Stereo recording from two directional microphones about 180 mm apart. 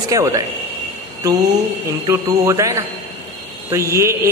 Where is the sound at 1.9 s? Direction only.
15° right (ahead or behind).